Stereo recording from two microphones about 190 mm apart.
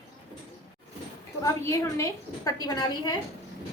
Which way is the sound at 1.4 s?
15° left (ahead or behind).